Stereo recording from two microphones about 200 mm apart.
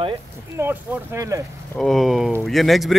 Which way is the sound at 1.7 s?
Centre (ahead or behind).